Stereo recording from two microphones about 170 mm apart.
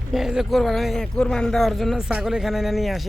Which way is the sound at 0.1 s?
5° right (ahead or behind).